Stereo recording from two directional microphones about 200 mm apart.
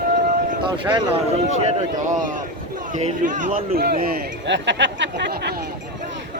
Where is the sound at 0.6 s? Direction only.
25° right (ahead or behind).